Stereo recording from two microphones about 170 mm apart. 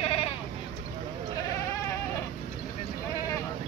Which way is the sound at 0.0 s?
35° left (ahead or behind).